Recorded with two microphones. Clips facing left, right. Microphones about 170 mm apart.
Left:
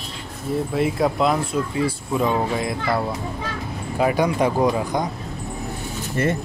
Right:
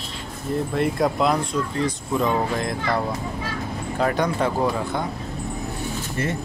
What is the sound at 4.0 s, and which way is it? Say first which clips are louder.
Speech: left 3 dB; 10° left (ahead or behind).